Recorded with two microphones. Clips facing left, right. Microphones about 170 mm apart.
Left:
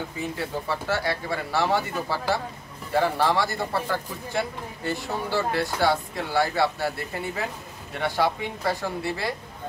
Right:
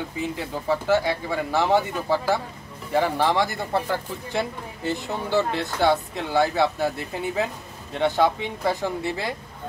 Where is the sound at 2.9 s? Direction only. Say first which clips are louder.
Right 1 dB; 20° right (ahead or behind).